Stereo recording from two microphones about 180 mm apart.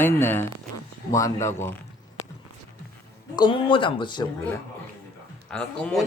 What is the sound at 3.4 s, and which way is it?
Speech, 30° left (ahead or behind).